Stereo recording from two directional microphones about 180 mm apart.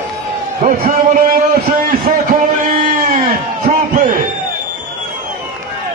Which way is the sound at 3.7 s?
45° right (ahead or behind).